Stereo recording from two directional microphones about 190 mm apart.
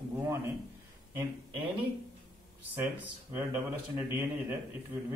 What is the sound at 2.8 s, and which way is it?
Speech, 10° right (ahead or behind).